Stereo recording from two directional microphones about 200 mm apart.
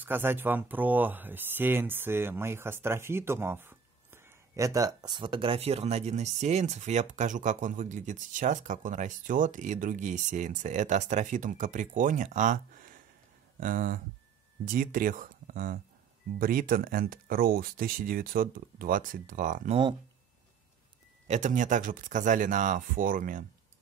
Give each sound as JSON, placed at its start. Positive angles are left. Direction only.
{"t": 0.0, "sound": "speech", "side_deg": -10}
{"t": 21.3, "sound": "speech", "side_deg": -35}